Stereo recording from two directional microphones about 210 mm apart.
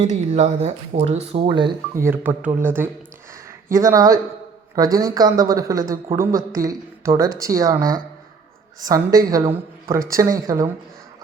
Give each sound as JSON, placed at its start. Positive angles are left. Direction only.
{"t": 0.1, "sound": "speech", "side_deg": -30}
{"t": 2.0, "sound": "speech", "side_deg": -10}
{"t": 8.8, "sound": "speech", "side_deg": -15}